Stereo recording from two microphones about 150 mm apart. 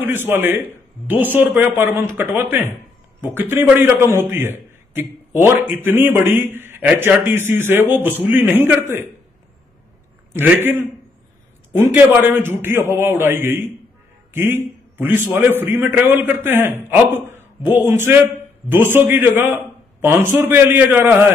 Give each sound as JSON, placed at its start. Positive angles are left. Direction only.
{"t": 0.0, "sound": "a man's voice", "side_deg": -15}
{"t": 10.3, "sound": "a man's voice", "side_deg": -15}